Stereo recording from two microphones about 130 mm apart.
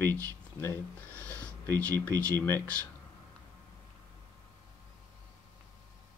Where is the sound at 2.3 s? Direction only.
20° left (ahead or behind).